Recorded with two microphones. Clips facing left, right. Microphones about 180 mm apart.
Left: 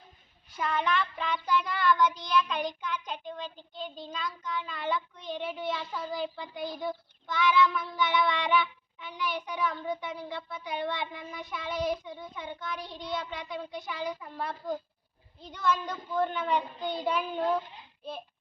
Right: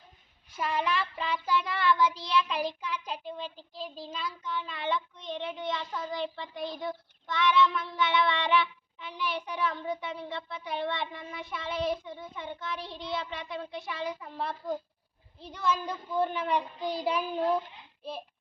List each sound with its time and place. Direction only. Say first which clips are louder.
0.5 s child singing: left 1 dB; 5° right (ahead or behind)
2.1 s child singing: left 1 dB; 30° right (ahead or behind)
2.4 s child singing: even; 5° right (ahead or behind)
3.4 s child singing: right 1 dB; 30° right (ahead or behind)
3.8 s child singing: even; centre (ahead or behind)
15.4 s a child's voice: left 1 dB; 5° right (ahead or behind)
17.0 s child singing: even; 5° right (ahead or behind)